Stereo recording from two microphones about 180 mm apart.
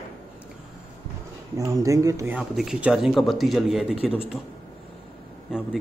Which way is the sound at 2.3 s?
5° right (ahead or behind).